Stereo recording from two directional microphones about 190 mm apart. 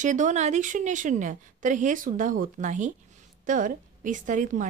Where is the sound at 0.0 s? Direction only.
40° right (ahead or behind).